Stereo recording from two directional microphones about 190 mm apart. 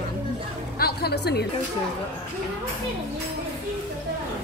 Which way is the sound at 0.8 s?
55° left (ahead or behind).